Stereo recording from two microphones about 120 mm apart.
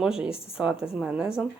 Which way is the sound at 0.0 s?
5° right (ahead or behind).